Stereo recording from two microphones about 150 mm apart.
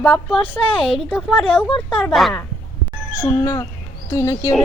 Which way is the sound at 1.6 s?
5° left (ahead or behind).